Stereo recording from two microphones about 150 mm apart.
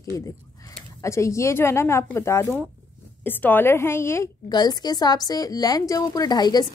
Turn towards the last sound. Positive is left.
turn(degrees=25)  # may be behind; listen again after turning